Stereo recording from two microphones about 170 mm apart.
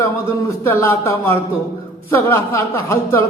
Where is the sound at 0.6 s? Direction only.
15° left (ahead or behind).